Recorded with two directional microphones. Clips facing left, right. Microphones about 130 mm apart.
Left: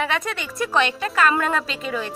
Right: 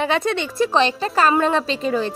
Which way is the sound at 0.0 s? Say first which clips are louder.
Right 5 dB; 30° right (ahead or behind).